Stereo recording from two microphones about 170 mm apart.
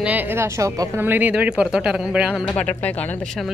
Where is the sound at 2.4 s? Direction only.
5° left (ahead or behind).